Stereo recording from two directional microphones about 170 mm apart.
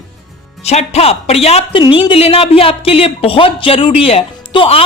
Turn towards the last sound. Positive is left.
turn(degrees=35)  # may be behind; listen again after turning